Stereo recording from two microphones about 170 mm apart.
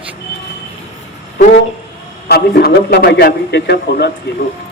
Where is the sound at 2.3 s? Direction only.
65° left (ahead or behind).